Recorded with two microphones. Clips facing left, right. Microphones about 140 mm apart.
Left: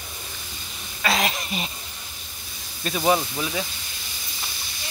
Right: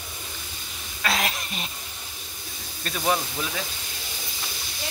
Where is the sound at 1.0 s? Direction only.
Centre (ahead or behind).